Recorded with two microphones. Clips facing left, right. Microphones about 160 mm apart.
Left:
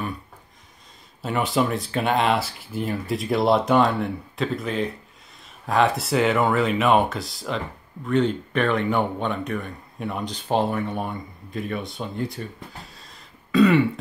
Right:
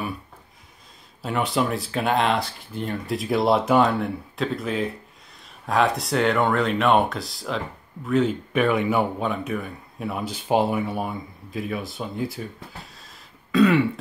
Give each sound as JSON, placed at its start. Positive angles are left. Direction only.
{"t": 1.2, "sound": "speech", "side_deg": 0}